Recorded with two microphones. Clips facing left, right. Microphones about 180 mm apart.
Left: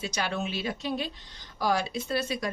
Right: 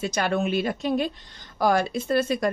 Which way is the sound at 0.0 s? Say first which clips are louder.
Right 7 dB; 55° right (ahead or behind).